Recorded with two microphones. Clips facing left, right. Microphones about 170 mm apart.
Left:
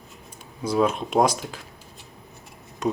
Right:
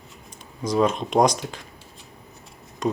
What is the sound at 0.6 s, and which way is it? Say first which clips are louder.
Speech: right 1 dB; 10° left (ahead or behind).